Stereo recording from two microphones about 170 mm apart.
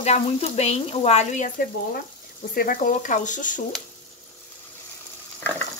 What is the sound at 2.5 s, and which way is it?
Speech, 60° left (ahead or behind).